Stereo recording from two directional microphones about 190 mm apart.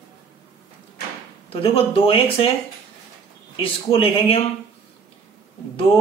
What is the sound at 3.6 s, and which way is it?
Speech, 30° left (ahead or behind).